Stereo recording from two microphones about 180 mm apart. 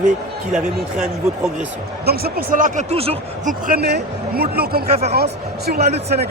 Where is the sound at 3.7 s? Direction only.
65° right (ahead or behind).